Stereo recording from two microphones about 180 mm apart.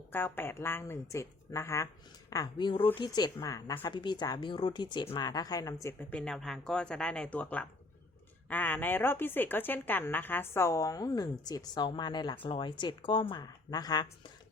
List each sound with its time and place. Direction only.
0.1 s a woman's voice: 10° left (ahead or behind)